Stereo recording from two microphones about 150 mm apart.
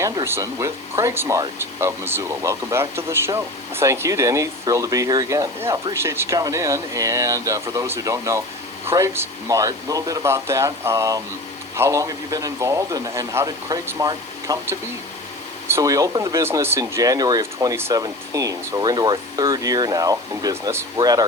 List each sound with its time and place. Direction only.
0.0 s speech: 20° right (ahead or behind)